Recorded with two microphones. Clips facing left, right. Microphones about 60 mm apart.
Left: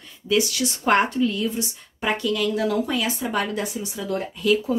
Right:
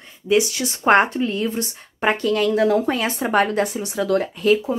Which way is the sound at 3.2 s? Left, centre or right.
Right.